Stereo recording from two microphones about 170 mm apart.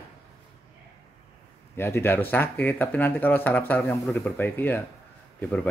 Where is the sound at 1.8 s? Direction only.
15° left (ahead or behind).